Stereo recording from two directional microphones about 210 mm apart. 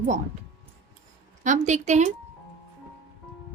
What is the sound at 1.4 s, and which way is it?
Speech, 35° right (ahead or behind).